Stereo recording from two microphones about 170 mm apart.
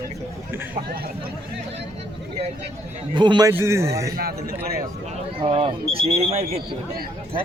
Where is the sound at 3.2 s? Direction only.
25° right (ahead or behind).